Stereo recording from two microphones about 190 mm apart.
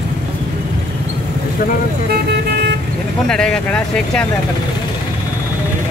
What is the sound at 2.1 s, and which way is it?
Speech, 60° right (ahead or behind).